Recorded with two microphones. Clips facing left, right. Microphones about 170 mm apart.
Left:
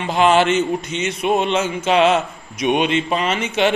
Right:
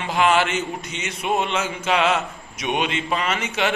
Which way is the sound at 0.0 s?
25° left (ahead or behind).